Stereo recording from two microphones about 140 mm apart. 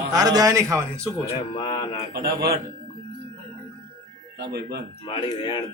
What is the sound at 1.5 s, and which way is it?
Speech, 35° left (ahead or behind).